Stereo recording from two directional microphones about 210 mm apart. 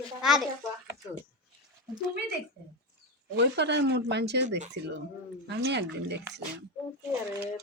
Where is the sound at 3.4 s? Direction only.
55° right (ahead or behind).